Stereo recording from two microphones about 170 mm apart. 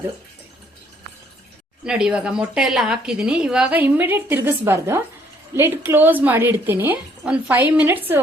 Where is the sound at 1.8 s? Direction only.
5° right (ahead or behind).